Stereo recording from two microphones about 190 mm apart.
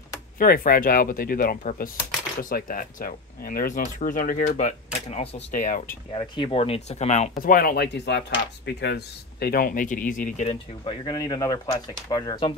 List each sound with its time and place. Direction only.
0.4 s speech: 50° left (ahead or behind)
6.1 s speech: 25° left (ahead or behind); by 10.4 s 45° left (ahead or behind)
10.5 s speech: 20° left (ahead or behind)